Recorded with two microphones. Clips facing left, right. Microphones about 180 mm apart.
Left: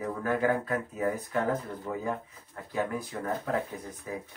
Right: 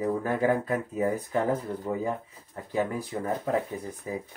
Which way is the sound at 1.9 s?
30° right (ahead or behind).